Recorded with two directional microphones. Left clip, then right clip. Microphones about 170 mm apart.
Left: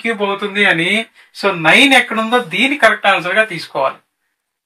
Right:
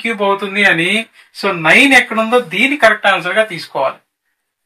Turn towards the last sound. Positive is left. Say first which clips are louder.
# even
turn(degrees=15)  # may be behind; listen again after turning